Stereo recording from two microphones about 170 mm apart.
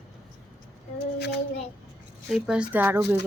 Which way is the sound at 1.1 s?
75° left (ahead or behind).